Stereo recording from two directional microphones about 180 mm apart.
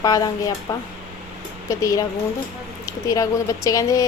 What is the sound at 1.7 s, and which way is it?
Speech, 20° left (ahead or behind).